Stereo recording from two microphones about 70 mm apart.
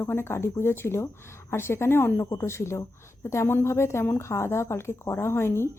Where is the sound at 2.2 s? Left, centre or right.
Left.